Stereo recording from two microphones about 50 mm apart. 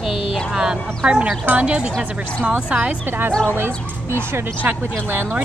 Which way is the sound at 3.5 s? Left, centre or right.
Right.